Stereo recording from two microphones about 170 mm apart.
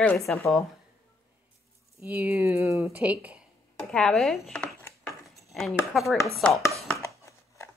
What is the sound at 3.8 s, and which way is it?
Speech, 5° left (ahead or behind).